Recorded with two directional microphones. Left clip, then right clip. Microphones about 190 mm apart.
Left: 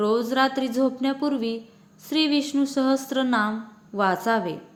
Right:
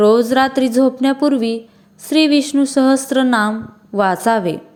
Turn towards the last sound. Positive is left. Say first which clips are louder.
# right 8 dB
turn(degrees=-45)  # may be behind; listen again after turning